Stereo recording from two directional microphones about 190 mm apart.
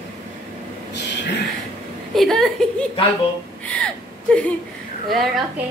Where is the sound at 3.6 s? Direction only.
5° left (ahead or behind).